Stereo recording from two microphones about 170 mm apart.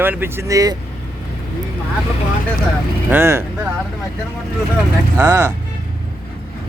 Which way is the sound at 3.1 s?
15° right (ahead or behind).